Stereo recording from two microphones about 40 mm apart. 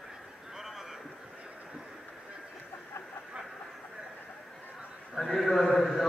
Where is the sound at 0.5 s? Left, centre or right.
Centre.